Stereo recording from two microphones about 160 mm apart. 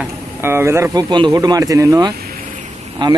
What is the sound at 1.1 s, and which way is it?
Speech, 25° right (ahead or behind).